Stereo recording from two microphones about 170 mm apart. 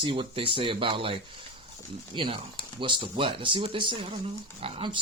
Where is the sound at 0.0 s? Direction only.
30° right (ahead or behind).